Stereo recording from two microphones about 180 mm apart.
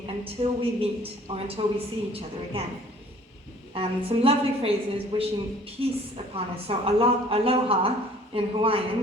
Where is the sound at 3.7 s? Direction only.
30° right (ahead or behind).